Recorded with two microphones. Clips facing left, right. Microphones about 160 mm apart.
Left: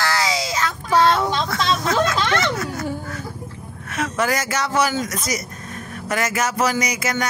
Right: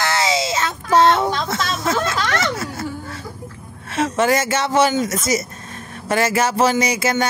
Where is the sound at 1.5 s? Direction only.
25° right (ahead or behind).